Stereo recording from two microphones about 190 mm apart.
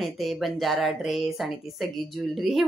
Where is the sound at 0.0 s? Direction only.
Centre (ahead or behind).